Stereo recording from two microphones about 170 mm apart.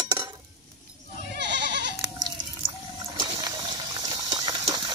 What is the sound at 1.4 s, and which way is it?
Goat, 90° right.